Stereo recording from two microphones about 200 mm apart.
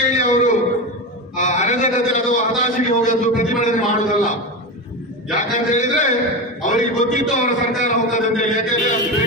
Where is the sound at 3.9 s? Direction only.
40° left (ahead or behind).